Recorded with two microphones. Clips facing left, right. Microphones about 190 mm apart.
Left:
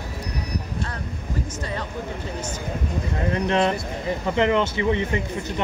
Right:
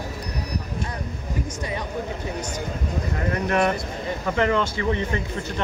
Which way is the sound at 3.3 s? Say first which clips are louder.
Left 1 dB; 25° left (ahead or behind).